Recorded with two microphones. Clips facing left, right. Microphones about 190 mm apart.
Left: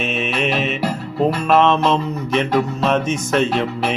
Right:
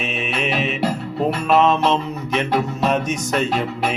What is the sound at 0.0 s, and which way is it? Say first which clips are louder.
Music: left 3 dB; centre (ahead or behind).